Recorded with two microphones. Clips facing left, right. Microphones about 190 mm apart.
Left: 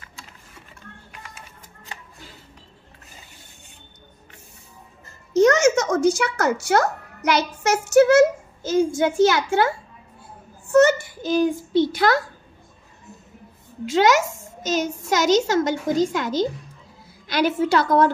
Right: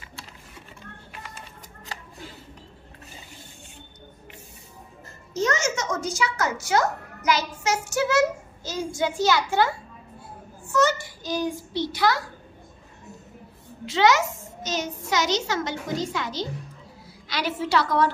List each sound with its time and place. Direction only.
5.3 s speech: 70° left (ahead or behind)
8.2 s a child's voice: 50° left (ahead or behind)
10.7 s a sound: 55° left (ahead or behind)
15.0 s a child's voice: 45° left (ahead or behind)